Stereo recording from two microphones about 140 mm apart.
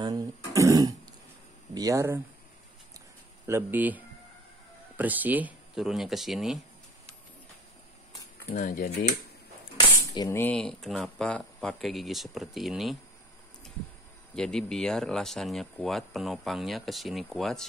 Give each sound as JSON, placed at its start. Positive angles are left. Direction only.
{"t": 0.0, "sound": "cough", "side_deg": -25}
{"t": 0.5, "sound": "throat clearing", "side_deg": -25}
{"t": 1.7, "sound": "speech", "side_deg": -25}
{"t": 3.4, "sound": "speech", "side_deg": -15}
{"t": 8.5, "sound": "speech", "side_deg": 70}
{"t": 10.0, "sound": "a sound", "side_deg": 25}
{"t": 10.4, "sound": "speech", "side_deg": 5}
{"t": 14.3, "sound": "speech", "side_deg": 5}